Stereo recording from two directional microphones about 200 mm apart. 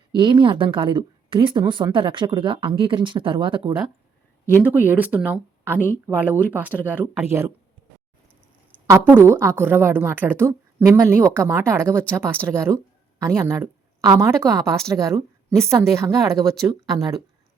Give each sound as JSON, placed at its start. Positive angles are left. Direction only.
{"t": 0.1, "sound": "a woman's voice", "side_deg": -25}
{"t": 4.6, "sound": "a woman's voice", "side_deg": -10}
{"t": 9.2, "sound": "a woman's voice", "side_deg": -10}